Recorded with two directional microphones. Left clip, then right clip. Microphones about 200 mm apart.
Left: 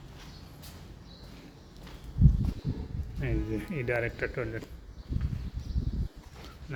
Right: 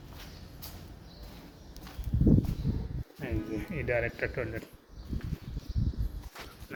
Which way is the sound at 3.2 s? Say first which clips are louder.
Left 2 dB; 20° left (ahead or behind).